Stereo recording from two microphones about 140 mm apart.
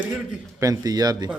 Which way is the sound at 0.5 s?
25° right (ahead or behind).